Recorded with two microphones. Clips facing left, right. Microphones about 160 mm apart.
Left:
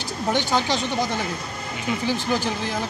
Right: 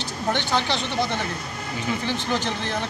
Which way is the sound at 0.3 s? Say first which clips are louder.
Left 2 dB; 10° left (ahead or behind).